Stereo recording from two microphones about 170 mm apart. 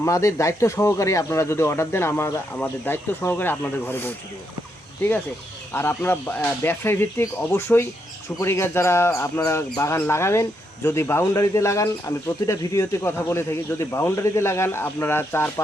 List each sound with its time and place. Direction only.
0.0 s speech: 20° left (ahead or behind)
5.7 s speech: 15° left (ahead or behind)